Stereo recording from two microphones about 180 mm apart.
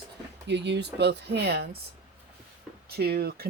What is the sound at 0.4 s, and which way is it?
Speech, 75° right (ahead or behind).